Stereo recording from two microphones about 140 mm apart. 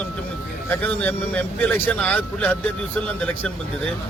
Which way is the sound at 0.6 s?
15° left (ahead or behind).